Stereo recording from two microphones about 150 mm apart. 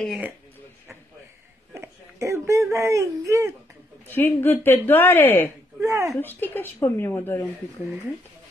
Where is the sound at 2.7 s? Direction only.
20° right (ahead or behind).